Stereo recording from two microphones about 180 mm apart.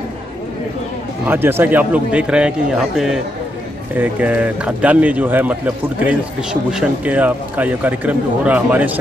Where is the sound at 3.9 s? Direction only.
10° right (ahead or behind).